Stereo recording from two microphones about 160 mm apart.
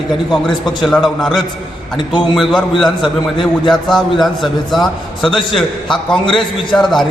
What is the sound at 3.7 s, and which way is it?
A man's voice, centre (ahead or behind).